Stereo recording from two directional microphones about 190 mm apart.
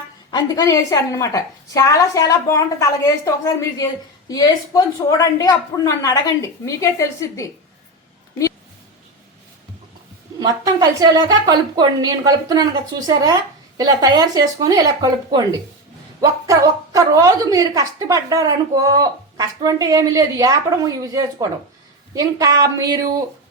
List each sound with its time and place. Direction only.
0.3 s a woman's voice: 20° left (ahead or behind)
10.4 s a woman's voice: 20° right (ahead or behind)